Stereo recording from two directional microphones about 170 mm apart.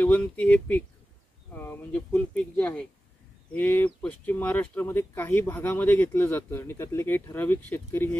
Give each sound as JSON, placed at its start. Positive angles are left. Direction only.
{"t": 0.0, "sound": "speech", "side_deg": 10}